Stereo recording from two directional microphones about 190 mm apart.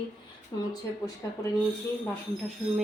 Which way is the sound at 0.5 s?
20° left (ahead or behind).